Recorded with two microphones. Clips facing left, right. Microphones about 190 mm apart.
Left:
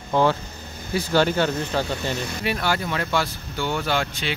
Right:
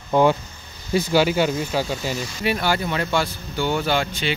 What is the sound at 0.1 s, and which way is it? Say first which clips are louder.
Speech: right 3 dB; 15° right (ahead or behind).